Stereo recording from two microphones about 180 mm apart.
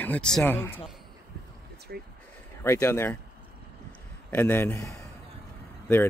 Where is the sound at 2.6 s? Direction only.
15° left (ahead or behind).